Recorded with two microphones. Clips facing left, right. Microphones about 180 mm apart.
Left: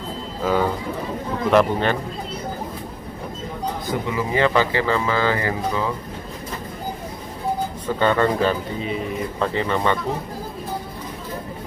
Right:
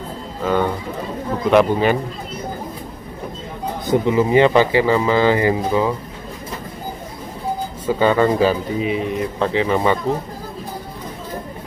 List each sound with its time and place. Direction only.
0.4 s speech: 5° left (ahead or behind)
3.8 s speech: 25° right (ahead or behind)
7.8 s speech: 5° right (ahead or behind)